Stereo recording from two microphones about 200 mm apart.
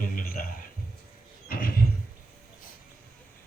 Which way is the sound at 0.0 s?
45° left (ahead or behind).